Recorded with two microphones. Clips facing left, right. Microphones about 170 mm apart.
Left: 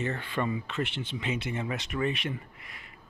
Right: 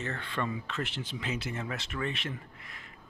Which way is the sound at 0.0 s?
10° left (ahead or behind).